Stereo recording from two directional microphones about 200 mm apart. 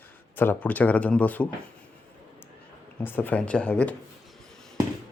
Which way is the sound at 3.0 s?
10° left (ahead or behind).